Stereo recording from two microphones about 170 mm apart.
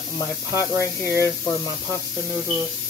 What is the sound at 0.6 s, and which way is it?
Speech, 15° left (ahead or behind).